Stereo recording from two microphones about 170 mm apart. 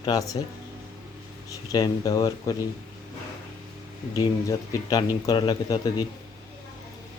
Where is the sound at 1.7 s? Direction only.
20° left (ahead or behind).